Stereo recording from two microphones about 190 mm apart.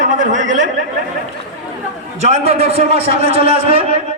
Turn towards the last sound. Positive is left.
turn(degrees=-30)  # may be behind; listen again after turning